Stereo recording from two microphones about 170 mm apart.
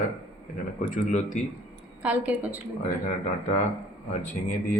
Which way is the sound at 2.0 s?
10° right (ahead or behind).